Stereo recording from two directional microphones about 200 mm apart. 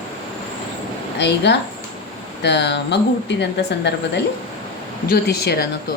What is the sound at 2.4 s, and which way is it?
Speech, 60° left (ahead or behind).